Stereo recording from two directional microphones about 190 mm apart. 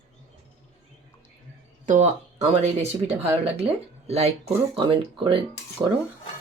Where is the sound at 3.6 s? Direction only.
35° right (ahead or behind).